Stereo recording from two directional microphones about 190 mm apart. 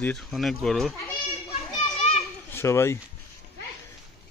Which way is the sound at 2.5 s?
15° left (ahead or behind).